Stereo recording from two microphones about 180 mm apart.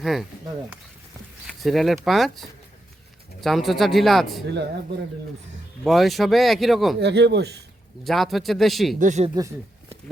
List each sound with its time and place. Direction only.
0.0 s speech: centre (ahead or behind)
1.5 s speech: centre (ahead or behind)
5.8 s speech: centre (ahead or behind)
7.0 s speech: 70° right (ahead or behind)
8.0 s speech: centre (ahead or behind)
9.0 s speech: 40° right (ahead or behind)